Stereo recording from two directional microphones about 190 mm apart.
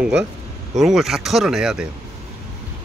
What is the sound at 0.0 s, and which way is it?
Speech, 5° right (ahead or behind).